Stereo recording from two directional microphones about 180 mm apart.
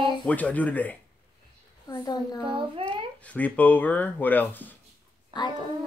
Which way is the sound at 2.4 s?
30° right (ahead or behind).